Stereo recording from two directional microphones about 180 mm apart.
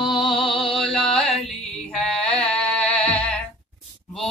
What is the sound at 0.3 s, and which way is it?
Music, 30° left (ahead or behind).